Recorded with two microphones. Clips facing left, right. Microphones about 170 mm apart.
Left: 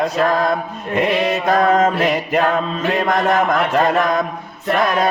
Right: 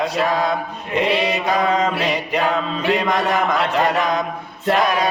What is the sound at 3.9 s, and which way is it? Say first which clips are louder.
Chant: left 3 dB; 50° left (ahead or behind).